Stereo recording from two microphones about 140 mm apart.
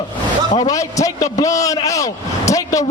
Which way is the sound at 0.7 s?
25° left (ahead or behind).